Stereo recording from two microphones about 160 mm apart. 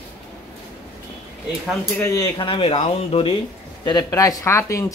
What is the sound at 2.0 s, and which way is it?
Speech, 20° left (ahead or behind).